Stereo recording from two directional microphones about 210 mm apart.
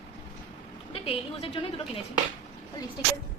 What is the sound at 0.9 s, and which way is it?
A woman's voice, 25° left (ahead or behind).